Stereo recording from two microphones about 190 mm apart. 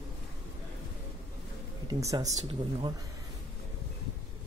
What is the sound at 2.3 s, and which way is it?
Speech, 35° right (ahead or behind).